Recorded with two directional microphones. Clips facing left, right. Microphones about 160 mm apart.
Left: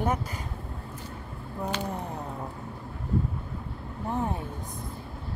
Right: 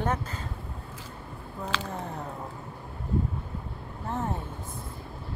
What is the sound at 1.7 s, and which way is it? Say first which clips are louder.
Speech: right 1 dB; 90° right.